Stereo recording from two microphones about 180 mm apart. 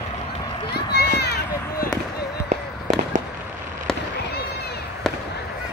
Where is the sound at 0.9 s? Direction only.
65° left (ahead or behind).